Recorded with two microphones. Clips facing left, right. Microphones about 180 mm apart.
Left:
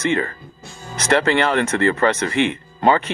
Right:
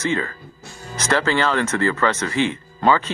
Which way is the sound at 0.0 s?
60° left (ahead or behind).